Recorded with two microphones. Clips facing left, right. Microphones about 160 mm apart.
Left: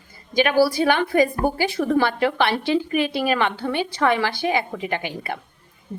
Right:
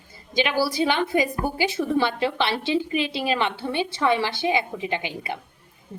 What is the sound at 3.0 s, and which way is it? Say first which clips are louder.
Speech: left 4 dB; 55° left (ahead or behind).